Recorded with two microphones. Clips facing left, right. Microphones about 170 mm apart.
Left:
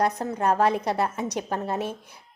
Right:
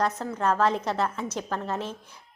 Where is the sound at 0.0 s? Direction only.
15° left (ahead or behind).